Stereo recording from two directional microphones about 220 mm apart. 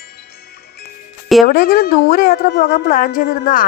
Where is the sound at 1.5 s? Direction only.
45° left (ahead or behind).